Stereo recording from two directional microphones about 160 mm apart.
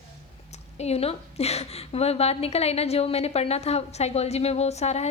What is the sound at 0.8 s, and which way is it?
A woman's voice, 40° left (ahead or behind).